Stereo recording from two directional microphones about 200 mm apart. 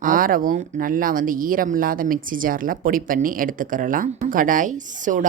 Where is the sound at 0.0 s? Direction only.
45° right (ahead or behind).